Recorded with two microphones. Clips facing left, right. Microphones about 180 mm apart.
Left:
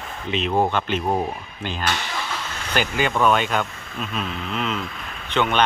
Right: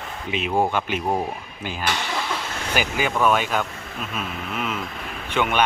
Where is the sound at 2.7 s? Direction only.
5° right (ahead or behind).